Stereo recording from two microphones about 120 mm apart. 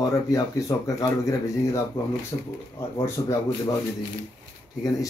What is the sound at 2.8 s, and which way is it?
Speech, 20° left (ahead or behind).